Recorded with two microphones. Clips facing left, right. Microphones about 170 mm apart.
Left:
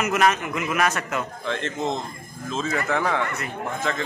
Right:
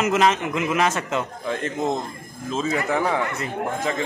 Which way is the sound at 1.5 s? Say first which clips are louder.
Right 2 dB; 10° right (ahead or behind).